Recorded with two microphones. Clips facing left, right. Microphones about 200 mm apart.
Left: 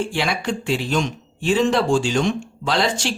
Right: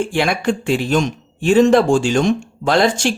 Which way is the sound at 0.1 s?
50° right (ahead or behind).